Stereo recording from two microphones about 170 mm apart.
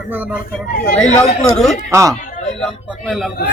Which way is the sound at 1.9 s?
15° right (ahead or behind).